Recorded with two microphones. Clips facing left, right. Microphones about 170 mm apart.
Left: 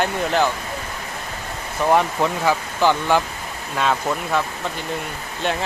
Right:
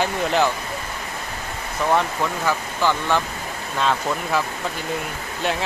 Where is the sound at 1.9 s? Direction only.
15° left (ahead or behind).